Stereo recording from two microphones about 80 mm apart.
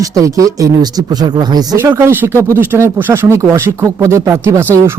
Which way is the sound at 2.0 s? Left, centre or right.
Right.